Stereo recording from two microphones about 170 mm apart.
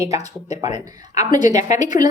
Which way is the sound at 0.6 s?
20° right (ahead or behind).